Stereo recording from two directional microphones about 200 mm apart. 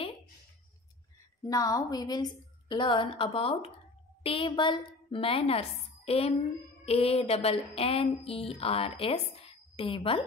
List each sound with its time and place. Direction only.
1.5 s a woman's voice: 15° left (ahead or behind)